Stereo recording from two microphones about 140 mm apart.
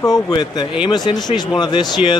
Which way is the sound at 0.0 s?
30° left (ahead or behind).